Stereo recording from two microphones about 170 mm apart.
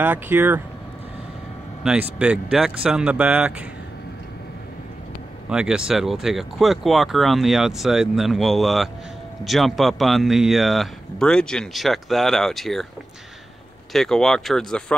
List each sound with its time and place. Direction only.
0.0 s speech: 10° right (ahead or behind)
1.8 s speech: 5° right (ahead or behind)
5.5 s speech: 5° right (ahead or behind)
13.9 s speech: 5° left (ahead or behind)